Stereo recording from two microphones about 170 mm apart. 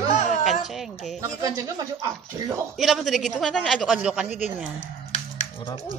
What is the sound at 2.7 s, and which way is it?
A woman's voice, centre (ahead or behind).